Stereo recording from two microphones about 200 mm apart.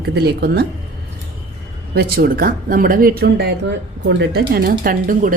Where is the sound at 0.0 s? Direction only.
55° right (ahead or behind).